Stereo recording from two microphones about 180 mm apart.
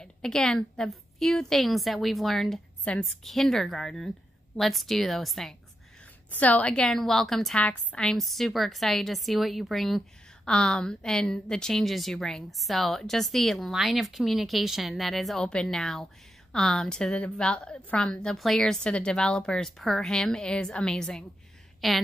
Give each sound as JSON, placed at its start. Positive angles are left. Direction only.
{"t": 0.0, "sound": "a woman's voice", "side_deg": 5}